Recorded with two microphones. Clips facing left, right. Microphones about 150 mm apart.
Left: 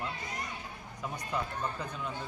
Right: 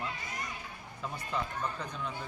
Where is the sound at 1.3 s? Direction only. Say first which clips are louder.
Even; 5° left (ahead or behind).